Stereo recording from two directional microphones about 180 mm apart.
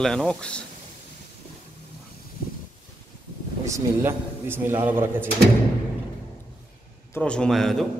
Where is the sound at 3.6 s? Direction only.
15° right (ahead or behind).